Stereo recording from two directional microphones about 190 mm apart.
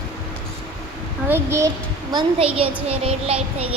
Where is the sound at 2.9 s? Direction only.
30° right (ahead or behind).